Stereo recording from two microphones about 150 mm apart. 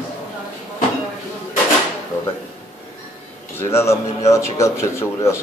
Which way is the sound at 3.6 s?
15° left (ahead or behind).